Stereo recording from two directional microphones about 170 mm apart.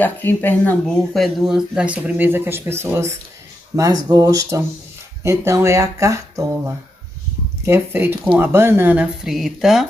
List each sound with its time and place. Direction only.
0.0 s speech: 10° left (ahead or behind)